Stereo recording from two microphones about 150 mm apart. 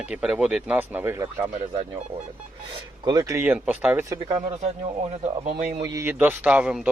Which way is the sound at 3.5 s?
10° right (ahead or behind).